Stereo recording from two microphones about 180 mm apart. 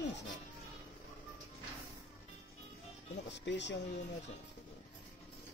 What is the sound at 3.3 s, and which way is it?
Speech, 75° left (ahead or behind).